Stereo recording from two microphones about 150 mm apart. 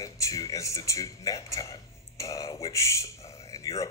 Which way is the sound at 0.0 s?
20° left (ahead or behind).